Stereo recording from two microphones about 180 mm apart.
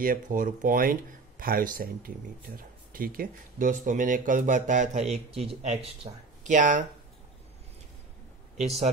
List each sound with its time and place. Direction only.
0.0 s speech: 50° right (ahead or behind)
8.5 s speech: 35° right (ahead or behind)